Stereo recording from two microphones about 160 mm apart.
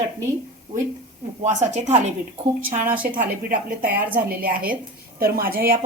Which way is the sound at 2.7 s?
55° right (ahead or behind).